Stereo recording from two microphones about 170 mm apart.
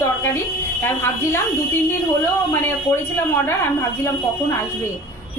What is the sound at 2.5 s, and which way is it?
Speech, 15° left (ahead or behind).